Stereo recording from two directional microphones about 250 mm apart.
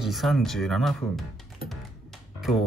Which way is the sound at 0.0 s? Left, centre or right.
Centre.